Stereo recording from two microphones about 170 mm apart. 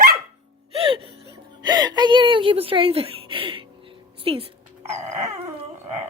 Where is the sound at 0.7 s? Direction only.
30° right (ahead or behind).